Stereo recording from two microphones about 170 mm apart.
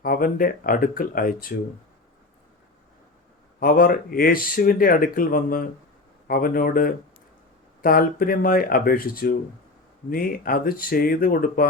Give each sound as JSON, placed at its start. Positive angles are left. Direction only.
{"t": 0.0, "sound": "speech", "side_deg": 55}
{"t": 3.6, "sound": "speech", "side_deg": 60}